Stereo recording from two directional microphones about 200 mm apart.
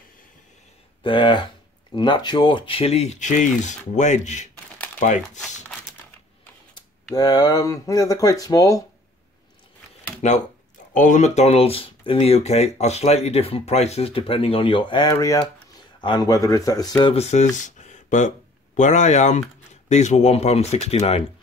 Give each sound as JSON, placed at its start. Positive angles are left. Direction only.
{"t": 1.0, "sound": "speech", "side_deg": 25}
{"t": 7.2, "sound": "speech", "side_deg": 20}
{"t": 10.2, "sound": "speech", "side_deg": 35}
{"t": 17.1, "sound": "speech", "side_deg": 35}